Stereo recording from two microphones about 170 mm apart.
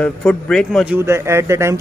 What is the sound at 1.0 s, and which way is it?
Speech, 15° right (ahead or behind).